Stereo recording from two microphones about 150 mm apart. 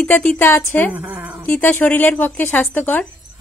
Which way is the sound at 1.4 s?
10° left (ahead or behind).